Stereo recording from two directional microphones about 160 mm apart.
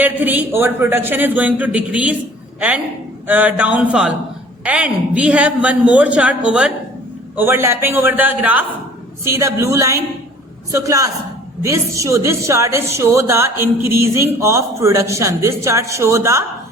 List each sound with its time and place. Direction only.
0.0 s a woman's voice: 10° right (ahead or behind)